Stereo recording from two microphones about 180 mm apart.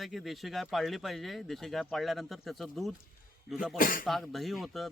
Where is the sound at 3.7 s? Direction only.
50° left (ahead or behind).